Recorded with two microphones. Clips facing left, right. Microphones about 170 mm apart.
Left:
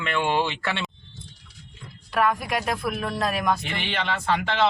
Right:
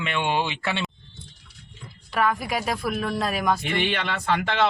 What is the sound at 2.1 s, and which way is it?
Speech, centre (ahead or behind).